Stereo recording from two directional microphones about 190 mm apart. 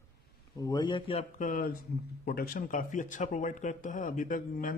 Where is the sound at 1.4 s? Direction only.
45° left (ahead or behind).